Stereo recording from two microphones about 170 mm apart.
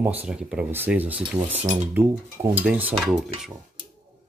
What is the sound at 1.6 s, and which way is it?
Speech, 45° right (ahead or behind).